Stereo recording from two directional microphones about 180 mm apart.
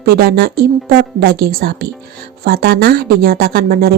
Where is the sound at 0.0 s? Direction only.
60° right (ahead or behind).